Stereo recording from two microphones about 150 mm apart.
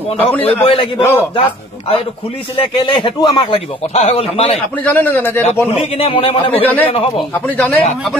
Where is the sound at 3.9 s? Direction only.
45° left (ahead or behind).